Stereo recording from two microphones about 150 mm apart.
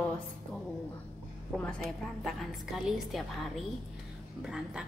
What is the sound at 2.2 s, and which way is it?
A woman's voice, centre (ahead or behind).